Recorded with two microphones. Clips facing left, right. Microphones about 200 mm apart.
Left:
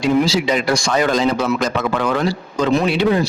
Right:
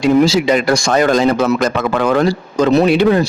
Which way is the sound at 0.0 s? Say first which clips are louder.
Right 5 dB; 50° right (ahead or behind).